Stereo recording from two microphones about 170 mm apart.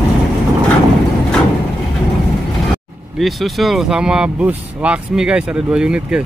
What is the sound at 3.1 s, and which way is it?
Speech, centre (ahead or behind).